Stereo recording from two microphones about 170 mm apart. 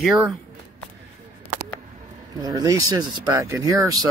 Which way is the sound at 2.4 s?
20° right (ahead or behind).